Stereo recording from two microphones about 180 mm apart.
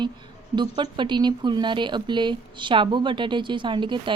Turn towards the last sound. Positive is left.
turn(degrees=-25)  # may be behind; listen again after turning